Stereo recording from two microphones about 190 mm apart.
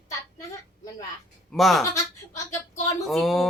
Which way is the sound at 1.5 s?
Centre (ahead or behind).